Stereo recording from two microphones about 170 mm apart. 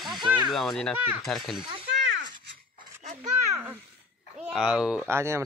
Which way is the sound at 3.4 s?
15° right (ahead or behind).